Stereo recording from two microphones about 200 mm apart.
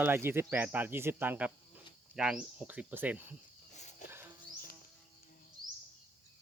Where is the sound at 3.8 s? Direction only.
35° left (ahead or behind).